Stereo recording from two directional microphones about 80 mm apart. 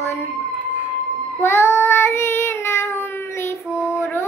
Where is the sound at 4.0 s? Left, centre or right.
Left.